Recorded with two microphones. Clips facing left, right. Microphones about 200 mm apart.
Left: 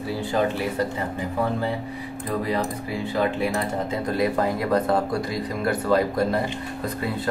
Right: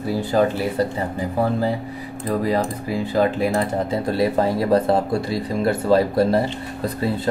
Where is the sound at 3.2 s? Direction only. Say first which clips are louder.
Right 5 dB; 35° right (ahead or behind).